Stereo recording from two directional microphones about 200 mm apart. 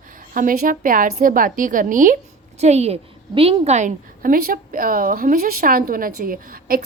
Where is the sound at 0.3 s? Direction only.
45° right (ahead or behind).